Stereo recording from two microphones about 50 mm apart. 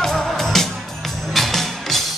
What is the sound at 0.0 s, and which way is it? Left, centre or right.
Music, centre.